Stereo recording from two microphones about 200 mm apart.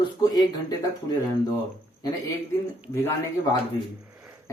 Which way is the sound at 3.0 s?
15° left (ahead or behind).